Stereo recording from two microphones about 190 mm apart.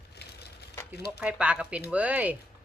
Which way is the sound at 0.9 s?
60° left (ahead or behind).